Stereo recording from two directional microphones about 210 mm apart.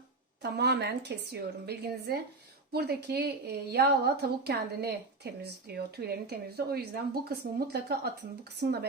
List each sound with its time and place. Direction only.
0.4 s a woman's voice: 50° right (ahead or behind)